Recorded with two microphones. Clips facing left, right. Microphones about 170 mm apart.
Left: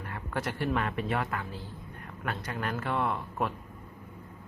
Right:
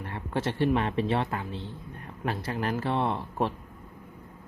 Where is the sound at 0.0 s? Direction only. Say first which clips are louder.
Right 4 dB; 30° right (ahead or behind).